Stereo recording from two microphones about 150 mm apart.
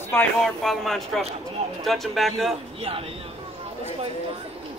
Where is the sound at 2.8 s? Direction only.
40° right (ahead or behind).